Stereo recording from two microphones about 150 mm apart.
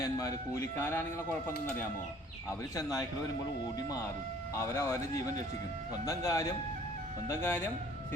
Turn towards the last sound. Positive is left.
turn(degrees=15)  # may be behind; listen again after turning